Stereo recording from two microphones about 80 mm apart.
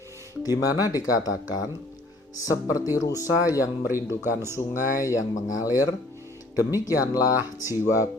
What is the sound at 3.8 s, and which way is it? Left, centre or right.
Speech, right.